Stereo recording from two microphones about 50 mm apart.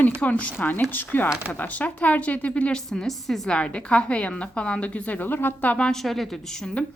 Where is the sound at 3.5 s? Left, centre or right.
Left.